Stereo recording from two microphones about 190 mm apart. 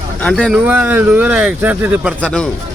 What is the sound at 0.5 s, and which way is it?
Speech, 10° right (ahead or behind).